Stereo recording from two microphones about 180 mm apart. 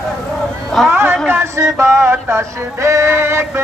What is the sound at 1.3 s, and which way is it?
Music, 15° right (ahead or behind).